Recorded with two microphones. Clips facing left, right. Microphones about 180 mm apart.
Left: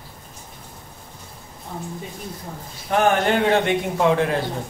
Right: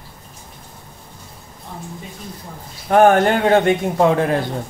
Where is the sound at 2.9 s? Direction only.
50° right (ahead or behind).